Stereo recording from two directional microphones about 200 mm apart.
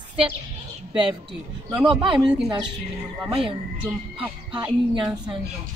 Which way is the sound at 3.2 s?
25° right (ahead or behind).